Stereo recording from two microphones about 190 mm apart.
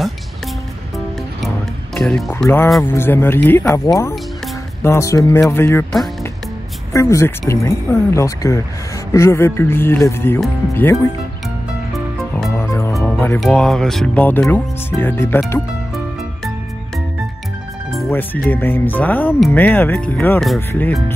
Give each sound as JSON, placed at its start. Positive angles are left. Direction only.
{"t": 2.0, "sound": "speech", "side_deg": 0}
{"t": 6.9, "sound": "speech", "side_deg": 15}
{"t": 11.9, "sound": "music", "side_deg": 0}
{"t": 12.4, "sound": "music", "side_deg": 15}
{"t": 12.9, "sound": "music", "side_deg": 0}
{"t": 13.4, "sound": "speech", "side_deg": 0}
{"t": 17.9, "sound": "speech", "side_deg": 5}